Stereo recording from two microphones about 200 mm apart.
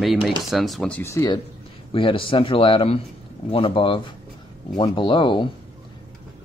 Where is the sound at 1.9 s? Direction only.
25° left (ahead or behind).